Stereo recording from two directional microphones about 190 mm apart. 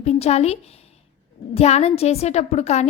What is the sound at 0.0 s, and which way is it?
A woman's voice, 35° left (ahead or behind).